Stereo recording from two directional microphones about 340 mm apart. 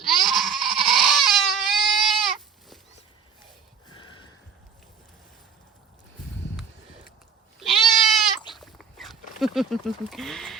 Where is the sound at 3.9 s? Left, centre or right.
Centre.